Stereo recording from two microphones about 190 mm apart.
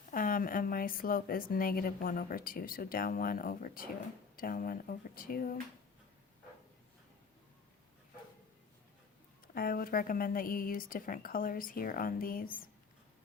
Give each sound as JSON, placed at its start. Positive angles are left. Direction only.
{"t": 0.1, "sound": "speech", "side_deg": 45}
{"t": 9.6, "sound": "speech", "side_deg": 50}